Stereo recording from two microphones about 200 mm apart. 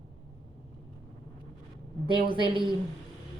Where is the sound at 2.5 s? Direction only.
25° right (ahead or behind).